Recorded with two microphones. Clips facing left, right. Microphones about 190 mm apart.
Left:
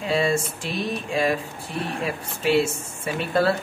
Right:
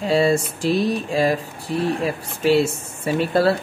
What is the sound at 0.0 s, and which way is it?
Speech, 35° right (ahead or behind).